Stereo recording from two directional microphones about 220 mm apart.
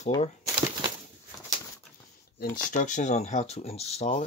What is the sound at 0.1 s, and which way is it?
Speech, 20° left (ahead or behind).